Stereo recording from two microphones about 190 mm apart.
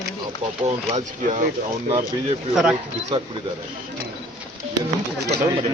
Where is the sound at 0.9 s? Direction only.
40° right (ahead or behind).